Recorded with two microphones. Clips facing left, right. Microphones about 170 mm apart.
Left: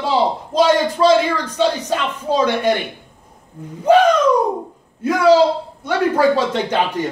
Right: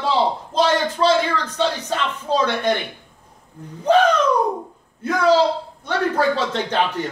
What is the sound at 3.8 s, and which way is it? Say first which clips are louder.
A man's voice: left 3 dB; 10° left (ahead or behind).